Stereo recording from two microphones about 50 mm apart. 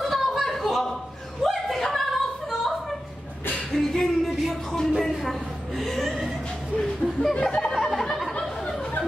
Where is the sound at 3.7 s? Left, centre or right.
Centre.